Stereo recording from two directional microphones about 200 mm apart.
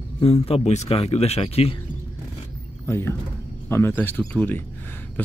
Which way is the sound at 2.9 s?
10° left (ahead or behind).